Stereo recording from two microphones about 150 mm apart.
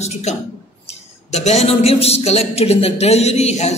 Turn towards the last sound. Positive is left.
turn(degrees=45)  # may be behind; listen again after turning